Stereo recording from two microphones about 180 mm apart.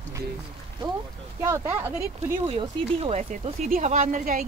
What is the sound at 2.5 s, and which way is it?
Speech, 35° right (ahead or behind).